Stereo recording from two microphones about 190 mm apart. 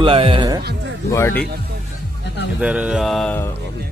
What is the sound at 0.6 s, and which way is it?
Music, 60° right (ahead or behind).